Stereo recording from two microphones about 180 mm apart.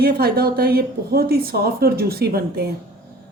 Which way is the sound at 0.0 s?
60° right (ahead or behind).